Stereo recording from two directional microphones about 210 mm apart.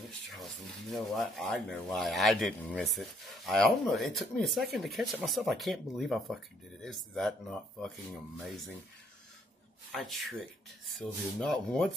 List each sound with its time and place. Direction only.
0.3 s speech: centre (ahead or behind)
8.4 s speech: centre (ahead or behind)
9.9 s speech: centre (ahead or behind)